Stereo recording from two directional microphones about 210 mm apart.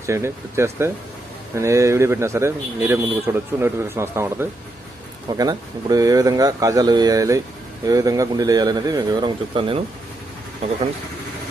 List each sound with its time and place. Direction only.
0.0 s speech: 15° right (ahead or behind)